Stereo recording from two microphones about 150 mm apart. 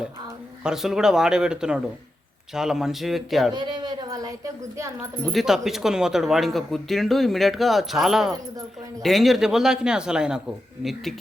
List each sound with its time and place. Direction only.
0.6 s speech: 5° right (ahead or behind)
3.5 s speech: 30° right (ahead or behind)
5.2 s speech: centre (ahead or behind)